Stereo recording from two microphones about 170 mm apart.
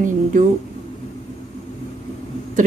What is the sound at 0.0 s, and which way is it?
Speech, 50° right (ahead or behind).